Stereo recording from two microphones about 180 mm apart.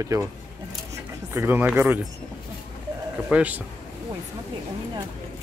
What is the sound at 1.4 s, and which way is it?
Speech, 10° right (ahead or behind).